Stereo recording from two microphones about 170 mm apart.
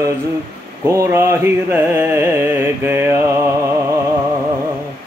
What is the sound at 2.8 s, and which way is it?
Mantra, 15° right (ahead or behind).